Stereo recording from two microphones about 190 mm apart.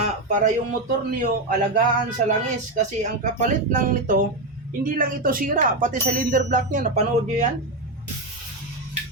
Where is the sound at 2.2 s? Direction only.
40° right (ahead or behind).